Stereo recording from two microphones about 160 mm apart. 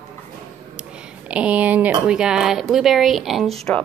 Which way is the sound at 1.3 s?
5° right (ahead or behind).